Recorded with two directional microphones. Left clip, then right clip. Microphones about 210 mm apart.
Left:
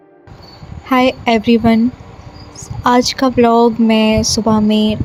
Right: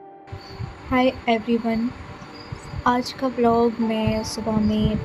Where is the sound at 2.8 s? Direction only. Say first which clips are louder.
Left 10 dB; 45° left (ahead or behind).